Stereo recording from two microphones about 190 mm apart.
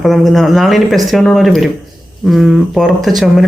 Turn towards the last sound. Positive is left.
turn(degrees=0)  # may be behind; listen again after turning